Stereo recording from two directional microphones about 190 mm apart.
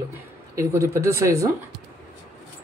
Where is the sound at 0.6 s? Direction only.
15° right (ahead or behind).